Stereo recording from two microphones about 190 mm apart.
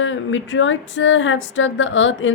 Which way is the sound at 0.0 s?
90° left.